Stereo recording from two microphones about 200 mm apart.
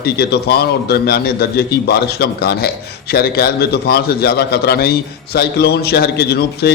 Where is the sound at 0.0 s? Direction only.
55° left (ahead or behind).